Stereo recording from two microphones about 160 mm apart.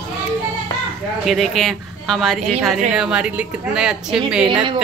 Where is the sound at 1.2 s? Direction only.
Centre (ahead or behind).